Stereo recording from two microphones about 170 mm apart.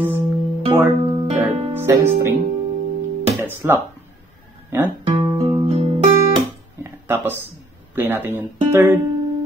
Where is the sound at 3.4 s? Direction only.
15° right (ahead or behind).